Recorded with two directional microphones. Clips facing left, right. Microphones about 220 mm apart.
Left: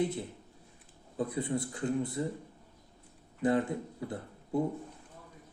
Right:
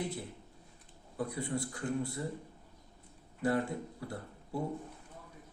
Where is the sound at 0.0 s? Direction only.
20° left (ahead or behind).